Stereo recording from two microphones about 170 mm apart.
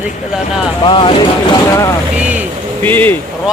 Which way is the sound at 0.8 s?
30° left (ahead or behind).